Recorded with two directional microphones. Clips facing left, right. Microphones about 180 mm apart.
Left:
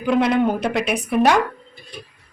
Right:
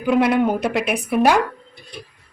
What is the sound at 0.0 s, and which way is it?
A woman's voice, 5° right (ahead or behind).